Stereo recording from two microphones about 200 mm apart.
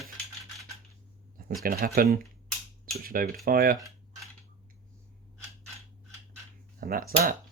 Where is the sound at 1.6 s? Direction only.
45° right (ahead or behind).